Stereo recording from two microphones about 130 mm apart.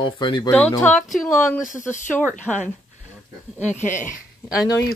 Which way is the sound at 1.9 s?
70° left (ahead or behind).